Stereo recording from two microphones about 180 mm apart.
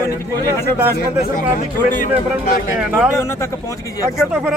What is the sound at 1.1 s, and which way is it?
Speech, 50° left (ahead or behind).